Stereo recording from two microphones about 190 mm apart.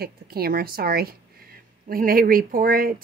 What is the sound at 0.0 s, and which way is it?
A woman's voice, 55° right (ahead or behind).